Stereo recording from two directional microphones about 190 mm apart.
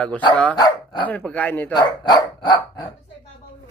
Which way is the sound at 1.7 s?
20° left (ahead or behind).